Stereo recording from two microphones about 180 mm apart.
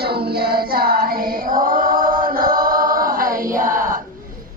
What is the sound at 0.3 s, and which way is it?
Chant, 60° right (ahead or behind).